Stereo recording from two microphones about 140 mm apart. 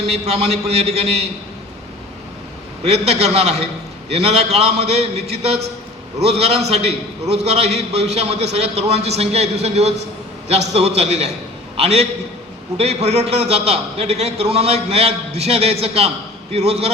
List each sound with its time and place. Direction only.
0.1 s a man's voice: 45° right (ahead or behind)
2.8 s a man's voice: 50° right (ahead or behind)